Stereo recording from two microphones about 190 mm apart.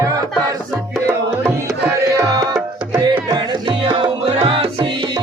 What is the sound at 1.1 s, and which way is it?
Tabla, 15° right (ahead or behind).